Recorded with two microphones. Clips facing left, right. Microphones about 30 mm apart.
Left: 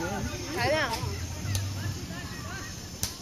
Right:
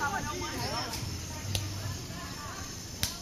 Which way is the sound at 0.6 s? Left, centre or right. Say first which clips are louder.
Left 14 dB; left.